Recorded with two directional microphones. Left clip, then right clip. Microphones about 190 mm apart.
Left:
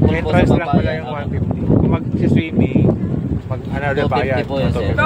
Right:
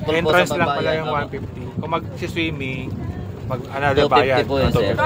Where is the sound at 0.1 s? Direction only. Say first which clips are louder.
Even; 20° right (ahead or behind).